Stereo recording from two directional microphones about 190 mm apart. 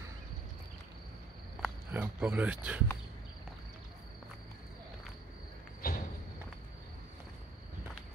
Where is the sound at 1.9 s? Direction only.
10° right (ahead or behind).